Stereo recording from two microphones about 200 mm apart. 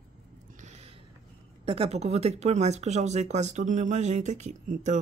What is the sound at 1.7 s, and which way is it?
Speech, 30° right (ahead or behind).